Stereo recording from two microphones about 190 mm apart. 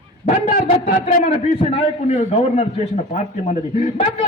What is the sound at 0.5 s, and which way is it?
Speech, 45° left (ahead or behind).